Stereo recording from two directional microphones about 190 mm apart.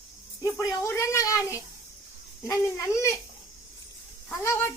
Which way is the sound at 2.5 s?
15° left (ahead or behind).